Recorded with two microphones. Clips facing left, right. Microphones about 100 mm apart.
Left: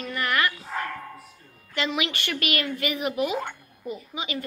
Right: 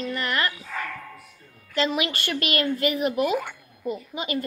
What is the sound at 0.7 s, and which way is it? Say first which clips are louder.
Dog: left 2 dB; 15° left (ahead or behind).